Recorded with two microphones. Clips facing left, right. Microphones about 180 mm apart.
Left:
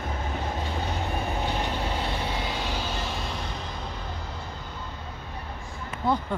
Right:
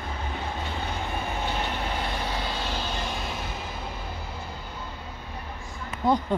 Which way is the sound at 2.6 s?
10° left (ahead or behind).